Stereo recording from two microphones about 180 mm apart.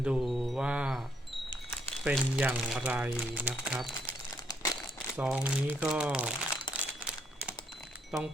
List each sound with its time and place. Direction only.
0.0 s wind chime: 5° right (ahead or behind)
2.0 s speech: 5° right (ahead or behind)
4.4 s crumpling: 20° left (ahead or behind)
5.1 s speech: 5° right (ahead or behind)
6.7 s crumpling: 5° right (ahead or behind)